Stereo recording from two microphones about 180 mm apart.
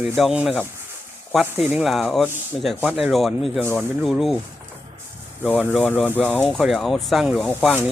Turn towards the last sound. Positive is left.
turn(degrees=5)  # may be behind; listen again after turning